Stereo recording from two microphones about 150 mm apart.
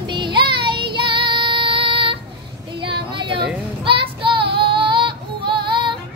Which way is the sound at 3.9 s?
35° right (ahead or behind).